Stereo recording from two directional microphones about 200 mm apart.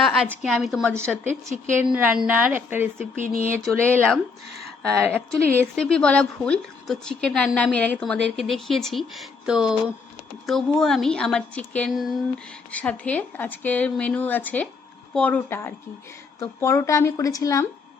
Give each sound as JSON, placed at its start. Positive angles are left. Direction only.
{"t": 0.0, "sound": "a woman's voice", "side_deg": 0}
{"t": 3.2, "sound": "speech", "side_deg": -40}
{"t": 3.7, "sound": "a woman's voice", "side_deg": 0}
{"t": 5.0, "sound": "a woman's voice", "side_deg": -10}
{"t": 5.7, "sound": "a woman's voice", "side_deg": 5}